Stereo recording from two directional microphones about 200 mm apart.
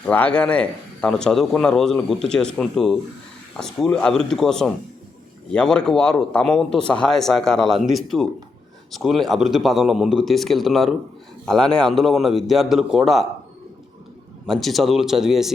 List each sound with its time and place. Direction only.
0.0 s speech: 5° left (ahead or behind)
14.4 s speech: centre (ahead or behind)